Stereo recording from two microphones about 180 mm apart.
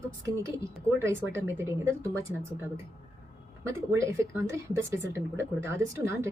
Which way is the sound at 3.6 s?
15° right (ahead or behind).